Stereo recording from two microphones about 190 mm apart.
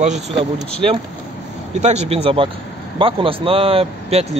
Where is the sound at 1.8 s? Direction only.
35° right (ahead or behind).